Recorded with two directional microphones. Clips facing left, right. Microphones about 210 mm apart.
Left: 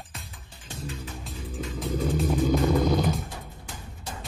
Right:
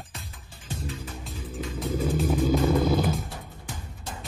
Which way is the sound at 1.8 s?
Centre (ahead or behind).